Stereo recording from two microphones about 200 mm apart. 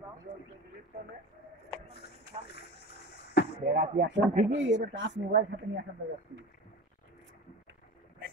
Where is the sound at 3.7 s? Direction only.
60° right (ahead or behind).